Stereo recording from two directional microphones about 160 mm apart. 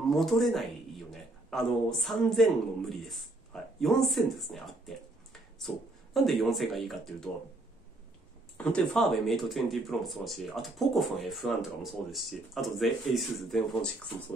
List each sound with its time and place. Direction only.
0.1 s speech: centre (ahead or behind)
6.1 s speech: centre (ahead or behind)
8.5 s speech: 5° left (ahead or behind)